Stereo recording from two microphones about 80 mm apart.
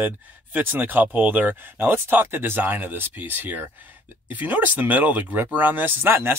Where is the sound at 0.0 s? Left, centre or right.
Right.